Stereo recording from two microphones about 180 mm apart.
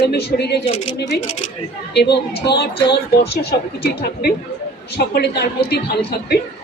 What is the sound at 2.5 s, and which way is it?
A woman's voice, 65° left (ahead or behind).